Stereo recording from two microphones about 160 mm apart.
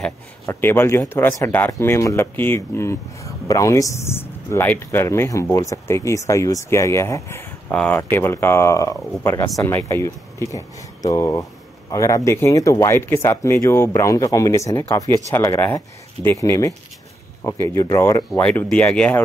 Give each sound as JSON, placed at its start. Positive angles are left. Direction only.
{"t": 0.5, "sound": "speech", "side_deg": 15}
{"t": 18.4, "sound": "speech", "side_deg": 5}